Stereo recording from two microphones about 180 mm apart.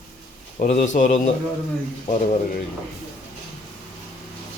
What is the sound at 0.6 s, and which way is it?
Speech, 45° left (ahead or behind).